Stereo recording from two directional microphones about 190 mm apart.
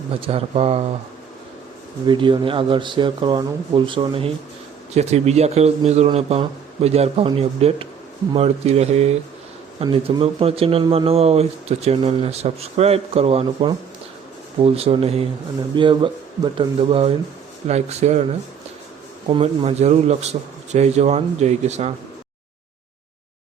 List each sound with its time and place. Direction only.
0.1 s speech: 30° right (ahead or behind)
2.0 s speech: 25° right (ahead or behind)
19.3 s speech: 35° right (ahead or behind)